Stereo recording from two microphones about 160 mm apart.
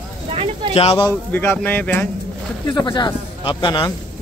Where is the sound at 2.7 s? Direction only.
25° left (ahead or behind).